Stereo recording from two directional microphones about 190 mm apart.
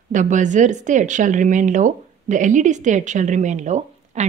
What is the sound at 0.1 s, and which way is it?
Speech, 40° right (ahead or behind).